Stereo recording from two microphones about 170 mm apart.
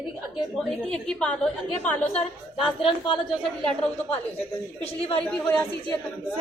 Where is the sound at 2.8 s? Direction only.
30° left (ahead or behind).